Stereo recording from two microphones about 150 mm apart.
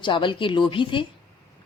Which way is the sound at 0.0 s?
30° left (ahead or behind).